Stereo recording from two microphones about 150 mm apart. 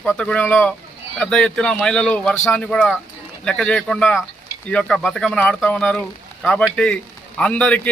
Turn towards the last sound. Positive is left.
turn(degrees=10)  # may be behind; listen again after turning